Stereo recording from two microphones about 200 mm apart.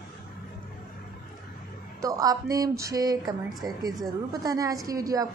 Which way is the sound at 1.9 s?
15° right (ahead or behind).